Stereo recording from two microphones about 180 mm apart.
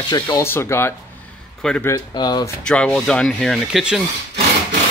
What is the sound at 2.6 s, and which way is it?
Speech, 5° left (ahead or behind).